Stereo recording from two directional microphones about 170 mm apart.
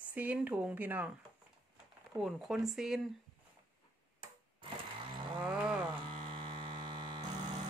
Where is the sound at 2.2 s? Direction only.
Centre (ahead or behind).